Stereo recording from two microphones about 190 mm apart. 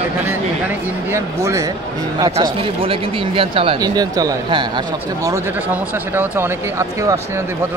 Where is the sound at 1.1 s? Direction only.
15° right (ahead or behind).